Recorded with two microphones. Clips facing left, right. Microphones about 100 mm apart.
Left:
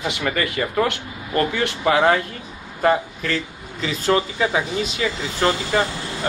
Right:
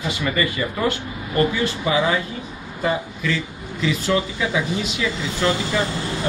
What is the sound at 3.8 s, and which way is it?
A man's voice, 40° left (ahead or behind).